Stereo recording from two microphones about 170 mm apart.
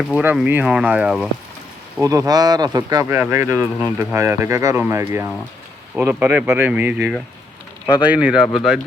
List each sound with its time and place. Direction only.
0.1 s speech: 10° right (ahead or behind)
2.0 s speech: 20° right (ahead or behind)
8.0 s speech: 5° right (ahead or behind)